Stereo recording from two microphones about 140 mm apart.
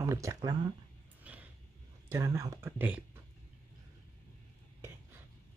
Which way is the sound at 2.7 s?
10° right (ahead or behind).